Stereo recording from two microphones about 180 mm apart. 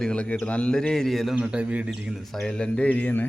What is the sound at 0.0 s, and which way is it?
A man's voice, 5° left (ahead or behind).